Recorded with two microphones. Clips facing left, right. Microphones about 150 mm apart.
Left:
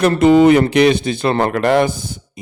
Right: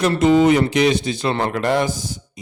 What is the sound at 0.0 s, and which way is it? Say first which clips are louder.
A man's voice: left 4 dB; 60° left (ahead or behind).